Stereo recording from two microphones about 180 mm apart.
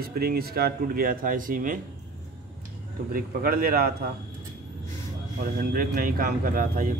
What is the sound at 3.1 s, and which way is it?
Speech, 55° right (ahead or behind).